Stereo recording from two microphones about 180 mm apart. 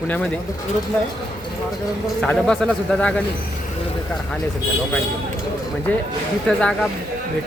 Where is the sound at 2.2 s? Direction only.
5° left (ahead or behind).